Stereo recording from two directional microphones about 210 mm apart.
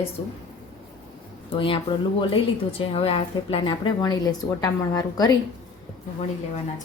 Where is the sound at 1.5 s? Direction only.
25° left (ahead or behind).